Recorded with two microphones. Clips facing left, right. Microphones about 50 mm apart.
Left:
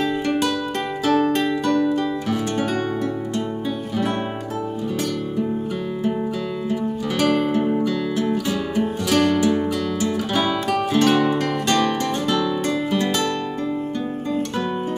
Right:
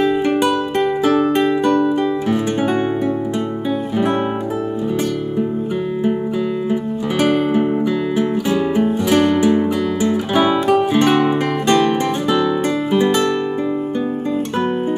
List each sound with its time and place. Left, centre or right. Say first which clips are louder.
0.0 s music: right 5 dB; centre
6.7 s music: right 4 dB; centre